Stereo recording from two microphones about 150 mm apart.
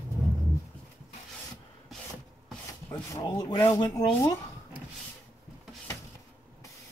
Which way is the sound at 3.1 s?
25° left (ahead or behind).